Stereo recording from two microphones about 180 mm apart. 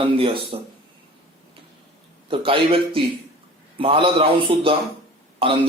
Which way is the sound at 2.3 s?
30° right (ahead or behind).